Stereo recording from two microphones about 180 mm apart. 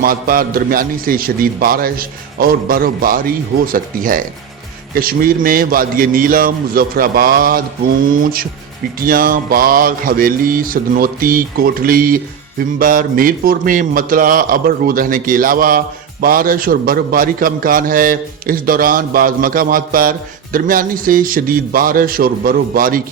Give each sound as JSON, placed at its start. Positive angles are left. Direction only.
{"t": 0.0, "sound": "a man's voice", "side_deg": -55}